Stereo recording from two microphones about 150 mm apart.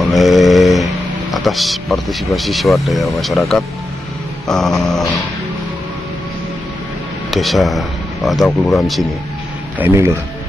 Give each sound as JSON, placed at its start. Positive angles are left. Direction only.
{"t": 0.0, "sound": "a sound", "side_deg": 0}
{"t": 1.3, "sound": "speech", "side_deg": 0}
{"t": 7.2, "sound": "speech", "side_deg": 0}
{"t": 9.8, "sound": "speech", "side_deg": -15}